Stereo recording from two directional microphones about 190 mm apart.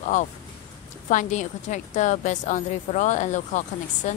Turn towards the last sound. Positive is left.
turn(degrees=40)  # may be behind; listen again after turning